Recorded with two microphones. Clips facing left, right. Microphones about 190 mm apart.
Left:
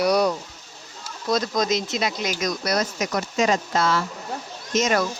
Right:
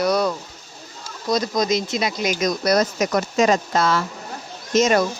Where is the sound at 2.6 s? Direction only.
40° right (ahead or behind).